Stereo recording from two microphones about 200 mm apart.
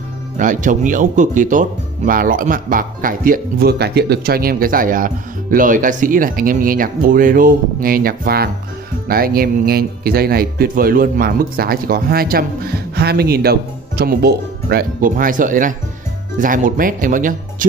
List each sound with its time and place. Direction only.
0.4 s speech: 40° right (ahead or behind)